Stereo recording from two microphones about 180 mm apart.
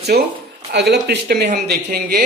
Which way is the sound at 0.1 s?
60° right (ahead or behind).